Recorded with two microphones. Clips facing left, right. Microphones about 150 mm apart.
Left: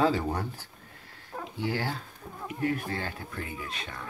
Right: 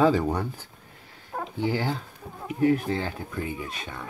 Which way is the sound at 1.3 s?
50° right (ahead or behind).